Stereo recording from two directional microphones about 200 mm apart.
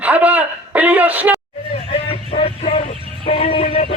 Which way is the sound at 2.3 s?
30° left (ahead or behind).